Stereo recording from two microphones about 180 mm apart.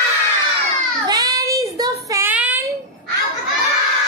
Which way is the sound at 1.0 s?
20° right (ahead or behind).